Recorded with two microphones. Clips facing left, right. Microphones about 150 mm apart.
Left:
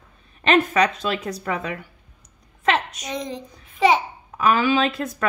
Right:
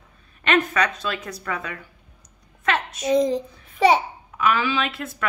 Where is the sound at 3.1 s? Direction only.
35° right (ahead or behind).